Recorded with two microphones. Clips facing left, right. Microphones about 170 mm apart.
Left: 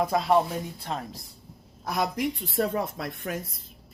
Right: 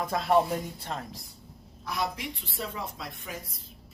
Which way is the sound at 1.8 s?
50° left (ahead or behind).